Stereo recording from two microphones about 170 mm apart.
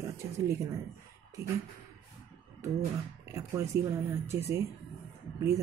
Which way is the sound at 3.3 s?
15° right (ahead or behind).